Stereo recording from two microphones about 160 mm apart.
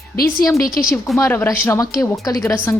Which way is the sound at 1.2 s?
15° left (ahead or behind).